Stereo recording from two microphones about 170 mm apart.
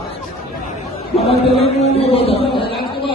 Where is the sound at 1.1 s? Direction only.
35° left (ahead or behind).